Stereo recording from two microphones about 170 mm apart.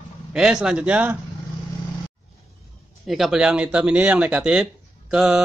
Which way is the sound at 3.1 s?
Centre (ahead or behind).